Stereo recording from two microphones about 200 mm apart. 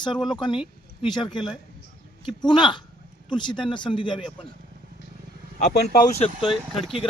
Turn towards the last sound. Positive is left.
turn(degrees=0)  # may be behind; listen again after turning